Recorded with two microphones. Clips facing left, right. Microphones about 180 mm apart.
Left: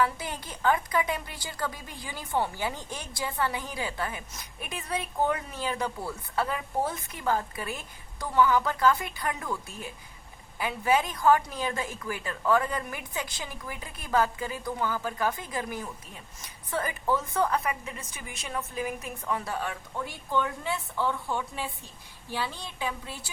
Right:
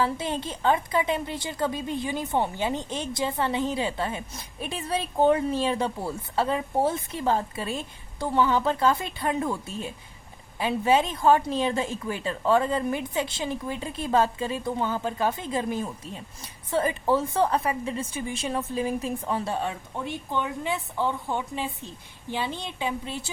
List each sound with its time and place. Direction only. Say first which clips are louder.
0.0 s a woman's voice: right 2 dB; 25° right (ahead or behind)